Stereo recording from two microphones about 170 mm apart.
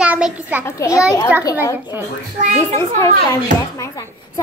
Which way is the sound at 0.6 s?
15° left (ahead or behind).